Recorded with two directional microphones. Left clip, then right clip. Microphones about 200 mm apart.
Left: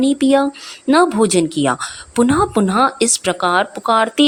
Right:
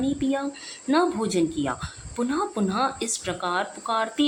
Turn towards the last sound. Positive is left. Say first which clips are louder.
# left 11 dB
turn(degrees=45)  # may be behind; listen again after turning